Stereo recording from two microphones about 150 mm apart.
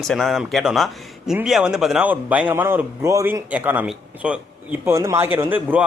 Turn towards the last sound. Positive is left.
turn(degrees=-10)  # may be behind; listen again after turning